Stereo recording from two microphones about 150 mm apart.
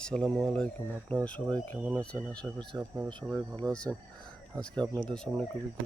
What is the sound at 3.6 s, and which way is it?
Speech, 25° right (ahead or behind).